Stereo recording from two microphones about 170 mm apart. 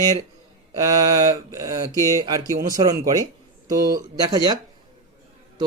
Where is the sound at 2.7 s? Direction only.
20° right (ahead or behind).